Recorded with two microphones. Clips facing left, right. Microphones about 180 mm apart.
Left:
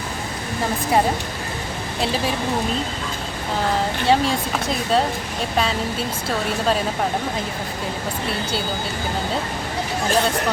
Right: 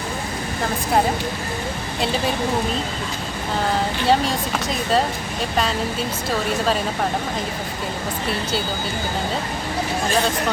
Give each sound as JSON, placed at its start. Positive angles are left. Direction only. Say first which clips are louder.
{"t": 4.0, "sound": "speech", "louder": "left 1 dB", "side_deg": 0}